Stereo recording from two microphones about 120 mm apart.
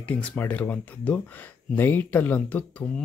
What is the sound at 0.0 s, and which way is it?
Speech, 10° left (ahead or behind).